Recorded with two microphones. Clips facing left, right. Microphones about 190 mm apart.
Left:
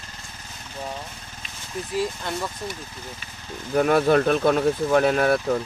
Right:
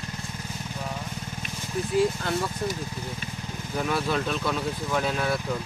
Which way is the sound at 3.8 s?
55° left (ahead or behind).